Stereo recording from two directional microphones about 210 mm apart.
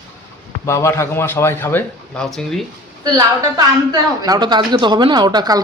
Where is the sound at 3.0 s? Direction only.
15° right (ahead or behind).